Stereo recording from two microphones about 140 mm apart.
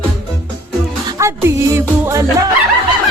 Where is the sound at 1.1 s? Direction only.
20° right (ahead or behind).